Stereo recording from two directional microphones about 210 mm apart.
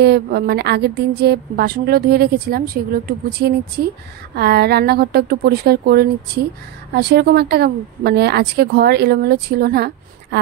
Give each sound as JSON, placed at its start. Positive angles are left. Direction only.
{"t": 0.0, "sound": "a woman's voice", "side_deg": -50}